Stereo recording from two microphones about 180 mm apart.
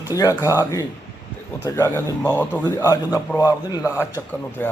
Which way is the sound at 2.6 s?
20° left (ahead or behind).